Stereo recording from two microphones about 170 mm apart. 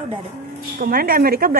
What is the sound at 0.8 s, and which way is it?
Speech, 60° right (ahead or behind).